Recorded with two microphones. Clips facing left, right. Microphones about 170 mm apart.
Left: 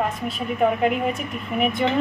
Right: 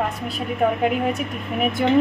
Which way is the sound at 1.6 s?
5° right (ahead or behind).